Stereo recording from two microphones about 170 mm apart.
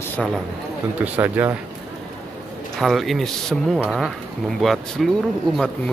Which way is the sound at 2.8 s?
Centre (ahead or behind).